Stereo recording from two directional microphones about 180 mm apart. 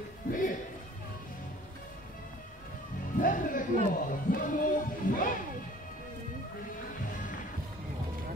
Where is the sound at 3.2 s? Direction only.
50° left (ahead or behind).